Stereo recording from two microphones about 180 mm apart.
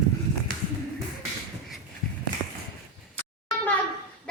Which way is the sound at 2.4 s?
35° right (ahead or behind).